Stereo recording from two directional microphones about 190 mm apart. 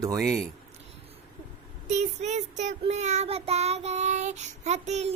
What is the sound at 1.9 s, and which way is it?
Child singing, 35° right (ahead or behind).